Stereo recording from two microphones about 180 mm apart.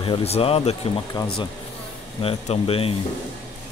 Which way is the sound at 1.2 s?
20° left (ahead or behind).